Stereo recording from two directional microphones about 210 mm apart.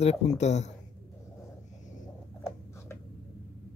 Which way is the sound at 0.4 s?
35° left (ahead or behind).